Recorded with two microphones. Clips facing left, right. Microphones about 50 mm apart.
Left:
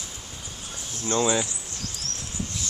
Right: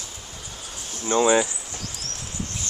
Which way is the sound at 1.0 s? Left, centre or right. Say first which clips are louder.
Right 5 dB; centre.